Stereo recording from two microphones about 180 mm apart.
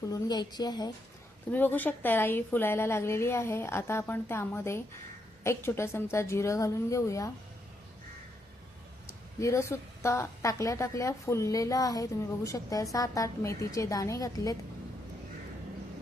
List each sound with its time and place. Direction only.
0.1 s a woman's voice: 20° left (ahead or behind)
1.5 s a woman's voice: 10° left (ahead or behind)
9.4 s a woman's voice: 15° left (ahead or behind)